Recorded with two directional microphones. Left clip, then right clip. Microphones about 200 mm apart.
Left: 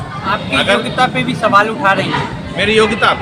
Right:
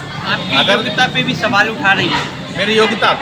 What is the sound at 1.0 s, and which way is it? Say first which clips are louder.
Speech: left 1 dB; 40° left (ahead or behind).